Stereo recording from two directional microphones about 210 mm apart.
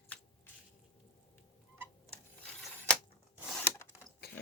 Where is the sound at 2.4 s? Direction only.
5° left (ahead or behind).